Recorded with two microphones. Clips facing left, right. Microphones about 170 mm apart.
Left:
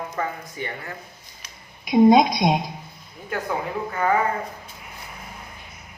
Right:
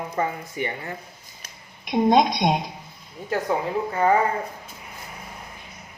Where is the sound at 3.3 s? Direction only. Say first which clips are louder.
Right 3 dB; 30° right (ahead or behind).